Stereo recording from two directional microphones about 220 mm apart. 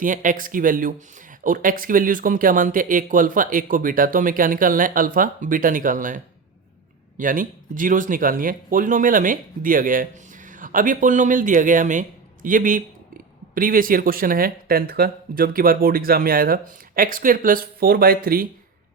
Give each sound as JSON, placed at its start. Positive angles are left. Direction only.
{"t": 0.0, "sound": "speech", "side_deg": -35}